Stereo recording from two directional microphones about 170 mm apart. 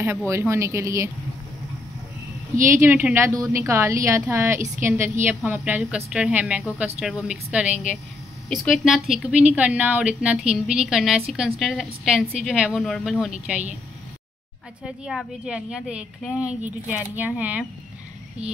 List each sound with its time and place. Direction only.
0.3 s speech: 15° right (ahead or behind)
2.6 s a woman's voice: 15° right (ahead or behind)
14.8 s a woman's voice: 5° right (ahead or behind)